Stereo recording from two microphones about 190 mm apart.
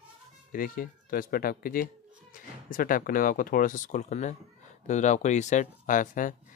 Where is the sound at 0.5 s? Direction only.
45° left (ahead or behind).